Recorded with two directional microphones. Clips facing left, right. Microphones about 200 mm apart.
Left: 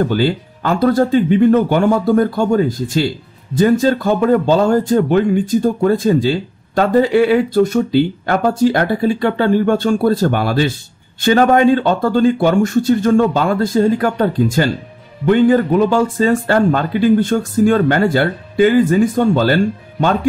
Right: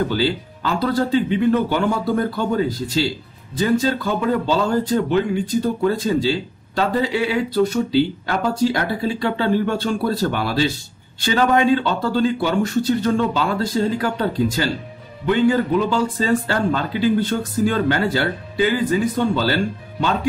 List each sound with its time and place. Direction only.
0.1 s speech: 50° left (ahead or behind)